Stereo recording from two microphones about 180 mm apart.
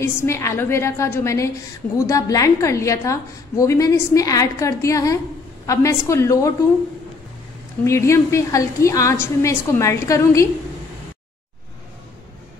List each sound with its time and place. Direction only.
0.0 s a woman's voice: 15° left (ahead or behind)
7.8 s a woman's voice: 15° left (ahead or behind)